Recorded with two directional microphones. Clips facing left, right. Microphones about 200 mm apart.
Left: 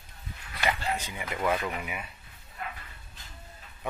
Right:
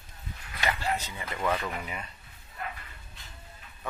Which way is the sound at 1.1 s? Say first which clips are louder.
Left 1 dB; 10° left (ahead or behind).